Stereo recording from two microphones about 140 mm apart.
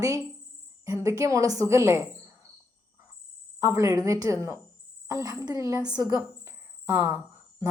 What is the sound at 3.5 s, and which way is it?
A woman's voice, 20° right (ahead or behind).